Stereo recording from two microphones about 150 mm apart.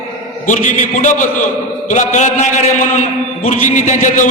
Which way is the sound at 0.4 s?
55° left (ahead or behind).